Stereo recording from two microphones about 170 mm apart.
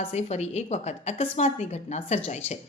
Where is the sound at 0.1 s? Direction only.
40° left (ahead or behind).